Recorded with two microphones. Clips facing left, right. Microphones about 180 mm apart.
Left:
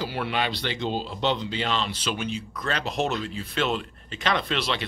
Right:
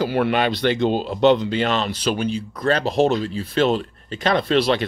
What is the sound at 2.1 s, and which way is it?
Speech, 35° right (ahead or behind).